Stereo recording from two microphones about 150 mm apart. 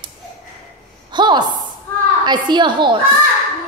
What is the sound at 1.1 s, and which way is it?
A woman's voice, 30° right (ahead or behind).